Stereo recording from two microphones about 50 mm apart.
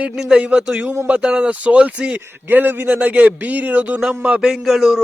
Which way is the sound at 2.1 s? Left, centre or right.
Right.